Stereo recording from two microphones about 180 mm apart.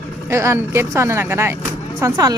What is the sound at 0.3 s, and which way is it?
A woman's voice, 15° right (ahead or behind).